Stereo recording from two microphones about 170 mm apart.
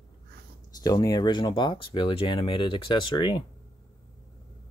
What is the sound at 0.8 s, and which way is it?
Speech, 20° left (ahead or behind).